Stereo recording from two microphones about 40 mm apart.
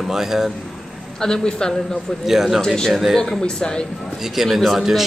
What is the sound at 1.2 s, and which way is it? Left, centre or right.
Speech, centre.